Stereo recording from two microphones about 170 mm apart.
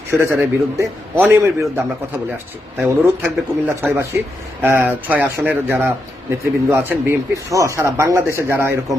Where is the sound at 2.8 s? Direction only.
10° right (ahead or behind).